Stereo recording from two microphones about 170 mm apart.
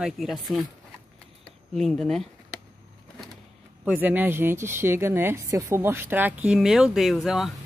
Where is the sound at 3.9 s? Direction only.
10° right (ahead or behind).